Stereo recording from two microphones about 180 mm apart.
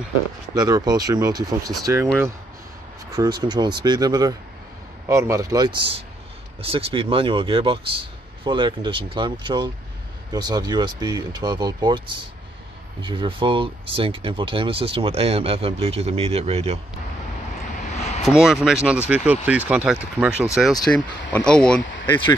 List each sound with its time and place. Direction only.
0.6 s speech: 20° right (ahead or behind)
3.1 s speech: 20° right (ahead or behind)
17.9 s vehicle: 40° left (ahead or behind)
18.2 s speech: centre (ahead or behind)
20.7 s speech: 20° left (ahead or behind)
21.3 s speech: 5° left (ahead or behind)